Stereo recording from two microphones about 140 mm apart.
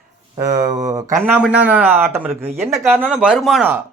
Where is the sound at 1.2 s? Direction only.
10° right (ahead or behind).